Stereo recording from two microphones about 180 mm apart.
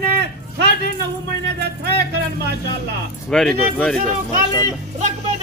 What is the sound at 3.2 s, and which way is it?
Speech, 5° left (ahead or behind).